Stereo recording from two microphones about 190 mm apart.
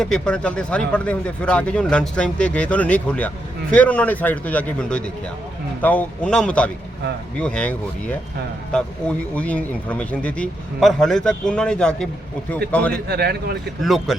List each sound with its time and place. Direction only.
0.0 s speech: 5° left (ahead or behind)
13.1 s speech: 55° right (ahead or behind)
13.8 s speech: centre (ahead or behind)